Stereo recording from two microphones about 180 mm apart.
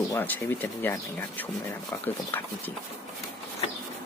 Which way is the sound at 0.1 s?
10° left (ahead or behind).